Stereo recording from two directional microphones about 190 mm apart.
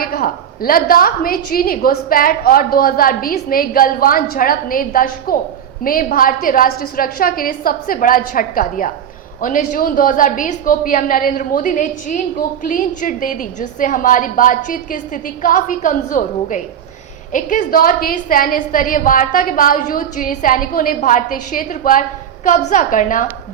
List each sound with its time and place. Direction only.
0.0 s a woman's voice: 50° left (ahead or behind)